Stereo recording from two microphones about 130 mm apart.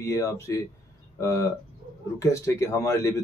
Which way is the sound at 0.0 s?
25° left (ahead or behind).